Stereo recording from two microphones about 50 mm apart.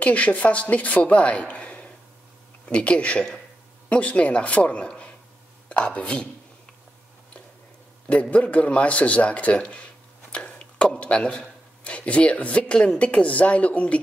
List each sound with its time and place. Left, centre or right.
0.0 s speech: left
8.1 s speech: left